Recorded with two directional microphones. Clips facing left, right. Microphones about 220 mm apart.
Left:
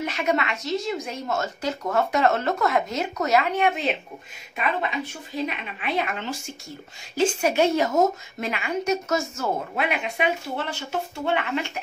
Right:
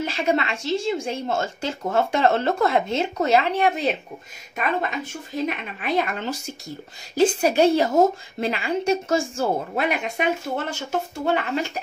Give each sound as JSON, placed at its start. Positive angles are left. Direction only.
{"t": 0.0, "sound": "a woman's voice", "side_deg": -30}